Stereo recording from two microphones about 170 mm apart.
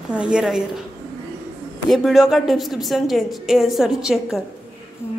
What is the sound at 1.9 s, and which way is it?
A woman's voice, centre (ahead or behind).